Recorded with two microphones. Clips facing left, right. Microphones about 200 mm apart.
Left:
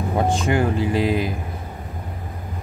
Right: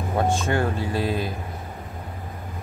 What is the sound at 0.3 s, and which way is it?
Speech, 15° left (ahead or behind).